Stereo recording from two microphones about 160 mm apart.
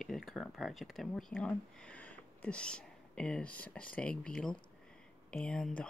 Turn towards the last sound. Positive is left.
turn(degrees=5)  # may be behind; listen again after turning